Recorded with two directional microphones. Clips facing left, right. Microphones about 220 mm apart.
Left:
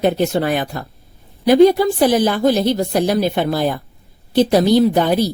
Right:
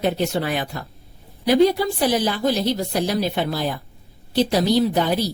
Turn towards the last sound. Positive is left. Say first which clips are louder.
# left 5 dB
turn(degrees=50)  # may be behind; listen again after turning